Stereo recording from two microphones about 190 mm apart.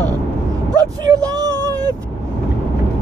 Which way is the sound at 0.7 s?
20° right (ahead or behind).